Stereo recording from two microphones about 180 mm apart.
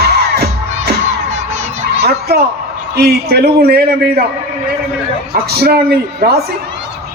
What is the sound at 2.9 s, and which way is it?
Speech, 65° right (ahead or behind).